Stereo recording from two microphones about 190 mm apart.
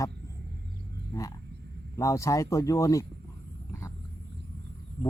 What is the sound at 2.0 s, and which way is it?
Speech, 15° left (ahead or behind).